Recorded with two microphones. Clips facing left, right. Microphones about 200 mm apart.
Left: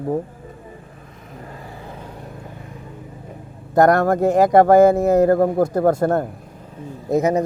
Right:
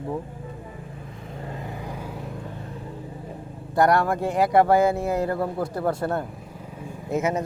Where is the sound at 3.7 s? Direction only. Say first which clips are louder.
Left 6 dB; 45° left (ahead or behind).